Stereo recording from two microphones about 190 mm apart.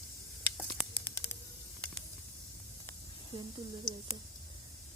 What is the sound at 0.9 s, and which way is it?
Spray, 10° left (ahead or behind).